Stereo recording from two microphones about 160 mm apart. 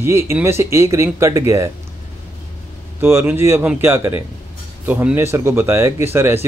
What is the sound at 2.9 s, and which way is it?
Speech, 15° right (ahead or behind).